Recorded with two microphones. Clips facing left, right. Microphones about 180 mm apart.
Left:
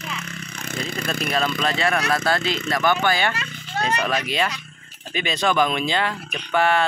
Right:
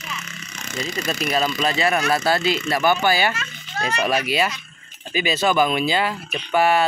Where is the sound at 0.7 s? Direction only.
55° left (ahead or behind).